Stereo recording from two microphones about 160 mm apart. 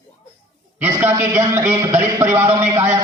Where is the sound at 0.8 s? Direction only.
15° right (ahead or behind).